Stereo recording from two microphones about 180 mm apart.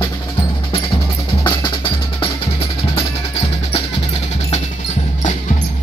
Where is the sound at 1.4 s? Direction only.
30° left (ahead or behind).